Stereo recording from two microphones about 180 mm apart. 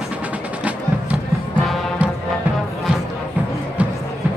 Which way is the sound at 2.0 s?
5° right (ahead or behind).